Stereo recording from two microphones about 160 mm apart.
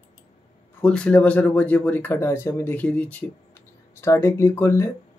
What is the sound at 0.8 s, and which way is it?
Speech, 5° left (ahead or behind).